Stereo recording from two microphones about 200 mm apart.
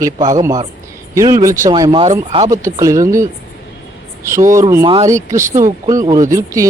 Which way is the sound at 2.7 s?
15° right (ahead or behind).